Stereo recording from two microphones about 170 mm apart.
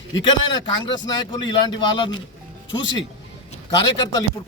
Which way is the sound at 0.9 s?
25° left (ahead or behind).